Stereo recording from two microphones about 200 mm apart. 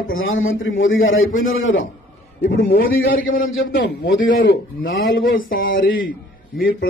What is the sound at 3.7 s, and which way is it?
Speech, 60° left (ahead or behind).